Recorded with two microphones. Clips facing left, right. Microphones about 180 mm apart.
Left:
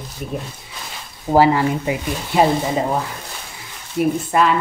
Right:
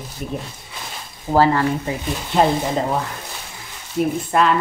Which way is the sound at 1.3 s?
15° left (ahead or behind).